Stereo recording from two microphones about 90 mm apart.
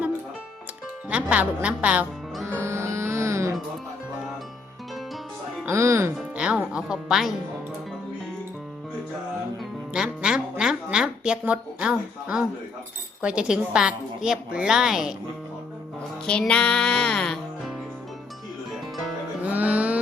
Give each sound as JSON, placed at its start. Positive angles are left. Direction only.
{"t": 1.1, "sound": "a woman's voice", "side_deg": -15}
{"t": 2.5, "sound": "music", "side_deg": -30}
{"t": 5.6, "sound": "music", "side_deg": -30}
{"t": 6.3, "sound": "music", "side_deg": -10}
{"t": 9.9, "sound": "music", "side_deg": -10}
{"t": 10.9, "sound": "a woman's voice", "side_deg": -10}
{"t": 16.2, "sound": "speech", "side_deg": 10}
{"t": 19.5, "sound": "music", "side_deg": -15}